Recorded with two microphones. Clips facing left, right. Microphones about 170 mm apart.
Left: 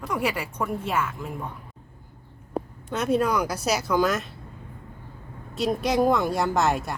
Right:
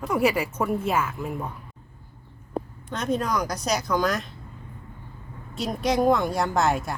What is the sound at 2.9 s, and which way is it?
A woman's voice, 10° left (ahead or behind).